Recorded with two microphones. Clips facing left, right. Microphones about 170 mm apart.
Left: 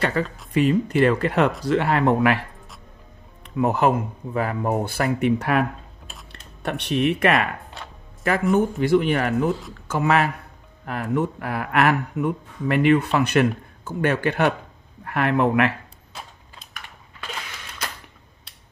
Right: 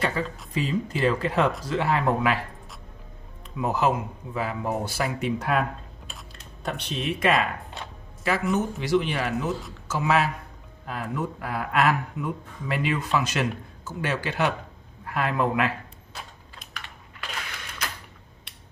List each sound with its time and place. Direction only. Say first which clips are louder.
0.0 s speech: left 4 dB; 65° left (ahead or behind)
3.4 s speech: left 4 dB; 65° left (ahead or behind)
8.2 s speech: left 5 dB; 50° left (ahead or behind); by 15.7 s 70° left (ahead or behind)